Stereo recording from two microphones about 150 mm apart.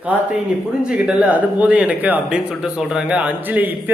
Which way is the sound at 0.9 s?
5° right (ahead or behind).